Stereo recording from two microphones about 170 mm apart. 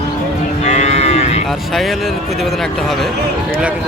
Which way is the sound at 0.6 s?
40° left (ahead or behind).